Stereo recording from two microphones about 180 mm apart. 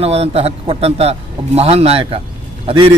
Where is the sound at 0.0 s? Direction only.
35° right (ahead or behind).